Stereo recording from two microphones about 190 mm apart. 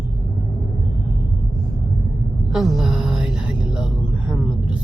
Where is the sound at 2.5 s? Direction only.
Centre (ahead or behind).